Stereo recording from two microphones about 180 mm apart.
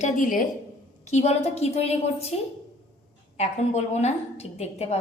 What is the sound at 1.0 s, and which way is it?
A woman's voice, 40° left (ahead or behind).